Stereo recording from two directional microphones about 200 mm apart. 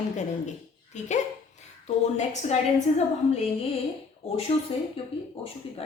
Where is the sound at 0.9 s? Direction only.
35° left (ahead or behind).